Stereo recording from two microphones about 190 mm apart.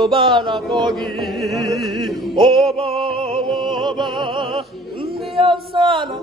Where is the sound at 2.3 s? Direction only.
25° right (ahead or behind).